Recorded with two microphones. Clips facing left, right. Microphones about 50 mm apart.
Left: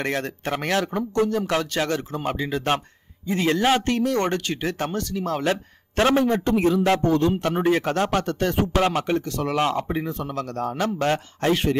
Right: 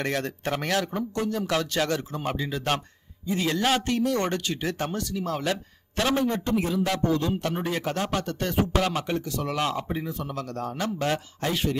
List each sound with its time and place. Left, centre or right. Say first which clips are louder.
0.0 s speech: left 2 dB; left
6.5 s speech: left 6 dB; left
8.7 s speech: left 4 dB; left